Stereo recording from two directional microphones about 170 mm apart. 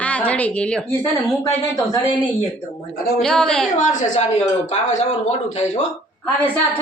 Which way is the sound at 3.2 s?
5° left (ahead or behind).